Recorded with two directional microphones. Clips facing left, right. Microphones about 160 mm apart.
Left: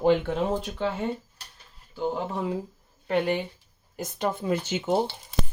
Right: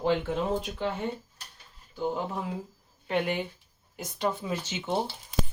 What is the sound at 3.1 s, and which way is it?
Speech, 35° left (ahead or behind).